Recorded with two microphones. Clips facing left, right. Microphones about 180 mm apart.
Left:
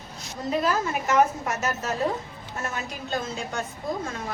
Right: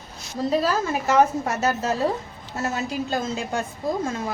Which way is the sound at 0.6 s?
30° right (ahead or behind).